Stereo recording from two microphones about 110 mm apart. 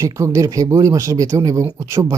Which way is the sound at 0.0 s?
25° right (ahead or behind).